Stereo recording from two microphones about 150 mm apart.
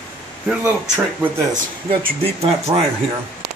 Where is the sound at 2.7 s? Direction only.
30° right (ahead or behind).